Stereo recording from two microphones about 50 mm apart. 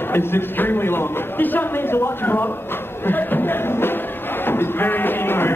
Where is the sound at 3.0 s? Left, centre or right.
Left.